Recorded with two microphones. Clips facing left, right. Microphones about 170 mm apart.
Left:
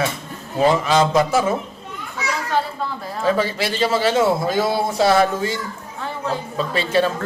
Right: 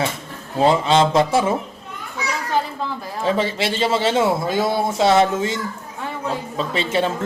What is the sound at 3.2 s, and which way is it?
A man's voice, 25° right (ahead or behind).